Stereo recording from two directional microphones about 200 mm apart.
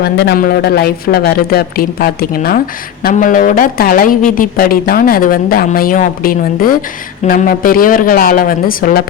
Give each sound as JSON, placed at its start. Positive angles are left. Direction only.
{"t": 0.0, "sound": "a woman's voice", "side_deg": 55}